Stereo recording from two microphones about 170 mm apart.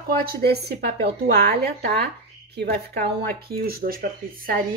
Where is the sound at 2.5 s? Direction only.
65° right (ahead or behind).